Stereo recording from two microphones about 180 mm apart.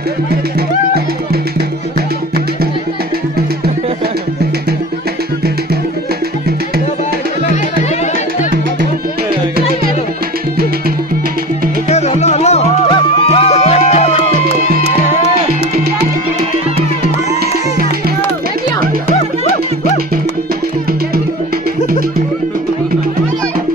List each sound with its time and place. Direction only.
11.9 s music: 35° left (ahead or behind)
19.0 s music: 40° left (ahead or behind)